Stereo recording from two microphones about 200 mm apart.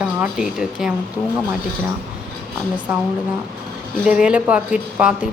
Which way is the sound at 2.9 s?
5° right (ahead or behind).